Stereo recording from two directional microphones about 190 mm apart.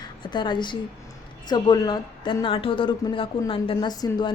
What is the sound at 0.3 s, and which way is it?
A woman's voice, 25° left (ahead or behind).